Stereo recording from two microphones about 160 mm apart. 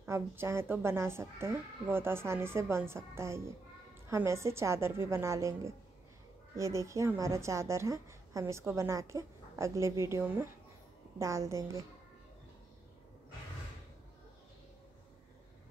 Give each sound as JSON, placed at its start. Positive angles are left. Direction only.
{"t": 0.0, "sound": "a woman's voice", "side_deg": -15}